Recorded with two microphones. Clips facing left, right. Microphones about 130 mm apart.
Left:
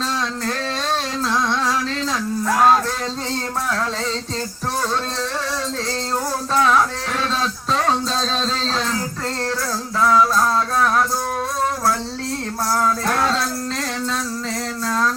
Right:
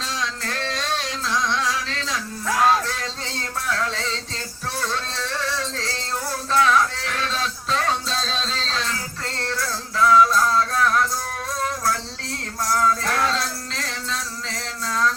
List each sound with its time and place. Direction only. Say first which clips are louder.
1.3 s music: left 2 dB; 40° left (ahead or behind)
2.6 s speech: left 3 dB; 45° left (ahead or behind)
6.5 s music: left 1 dB; 35° left (ahead or behind)
8.5 s a sound: left 5 dB; 40° left (ahead or behind)
10.0 s a sound: even; 35° left (ahead or behind)
12.6 s music: left 1 dB; 30° left (ahead or behind)